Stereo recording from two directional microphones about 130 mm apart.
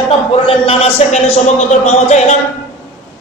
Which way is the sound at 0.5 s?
45° left (ahead or behind).